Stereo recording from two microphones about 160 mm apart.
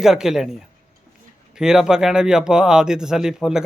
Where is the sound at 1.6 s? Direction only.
5° right (ahead or behind).